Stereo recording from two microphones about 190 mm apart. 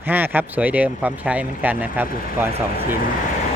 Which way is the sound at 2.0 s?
50° left (ahead or behind).